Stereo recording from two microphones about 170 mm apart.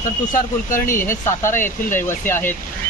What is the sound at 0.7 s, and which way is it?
Speech, 55° left (ahead or behind).